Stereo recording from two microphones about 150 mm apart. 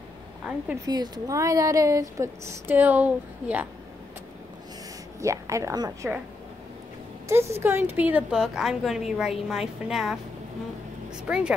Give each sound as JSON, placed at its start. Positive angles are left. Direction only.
{"t": 0.8, "sound": "speech", "side_deg": -25}
{"t": 5.2, "sound": "speech", "side_deg": -20}
{"t": 7.2, "sound": "a woman's voice", "side_deg": -20}
{"t": 11.2, "sound": "speech", "side_deg": -5}